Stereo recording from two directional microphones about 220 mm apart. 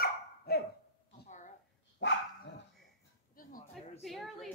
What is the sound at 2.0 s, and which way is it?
Dog, 55° left (ahead or behind).